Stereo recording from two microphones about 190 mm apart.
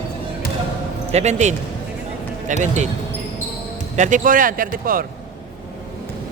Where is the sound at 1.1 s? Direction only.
35° right (ahead or behind).